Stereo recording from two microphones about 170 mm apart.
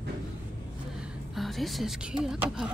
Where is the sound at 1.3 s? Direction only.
Centre (ahead or behind).